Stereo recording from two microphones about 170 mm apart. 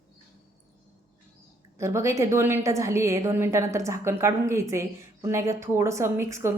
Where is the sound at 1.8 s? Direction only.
15° right (ahead or behind).